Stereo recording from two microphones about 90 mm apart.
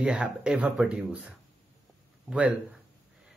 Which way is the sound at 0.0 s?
10° right (ahead or behind).